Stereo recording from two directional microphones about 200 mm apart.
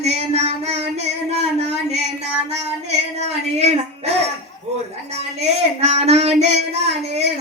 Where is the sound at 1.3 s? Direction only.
30° right (ahead or behind).